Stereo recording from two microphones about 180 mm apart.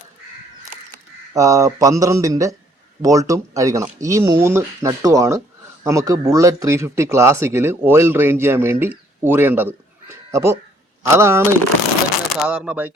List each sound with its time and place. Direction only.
1.3 s mantra: 20° right (ahead or behind)
3.8 s speech: 15° right (ahead or behind)
12.3 s speech: 5° right (ahead or behind)